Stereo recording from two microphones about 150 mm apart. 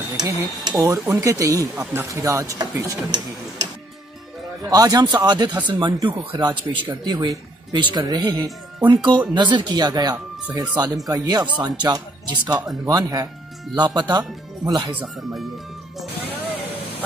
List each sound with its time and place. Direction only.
0.2 s speech: 25° right (ahead or behind)
4.6 s speech: 25° right (ahead or behind)